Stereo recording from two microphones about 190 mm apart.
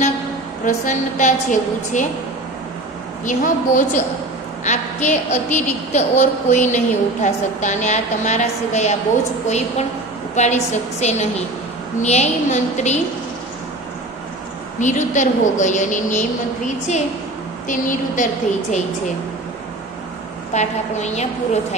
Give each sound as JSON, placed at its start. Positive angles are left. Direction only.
{"t": 0.7, "sound": "a woman's voice", "side_deg": 40}
{"t": 3.3, "sound": "a woman's voice", "side_deg": 40}
{"t": 14.8, "sound": "a woman's voice", "side_deg": 40}
{"t": 20.5, "sound": "a woman's voice", "side_deg": 35}